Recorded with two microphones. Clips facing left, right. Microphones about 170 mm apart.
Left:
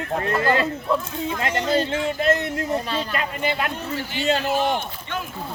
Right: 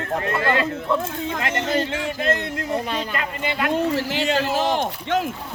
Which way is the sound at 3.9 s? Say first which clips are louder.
Right 2 dB; 90° right.